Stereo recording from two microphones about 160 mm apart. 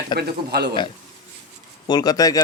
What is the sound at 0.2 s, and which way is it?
Speech, 90° right.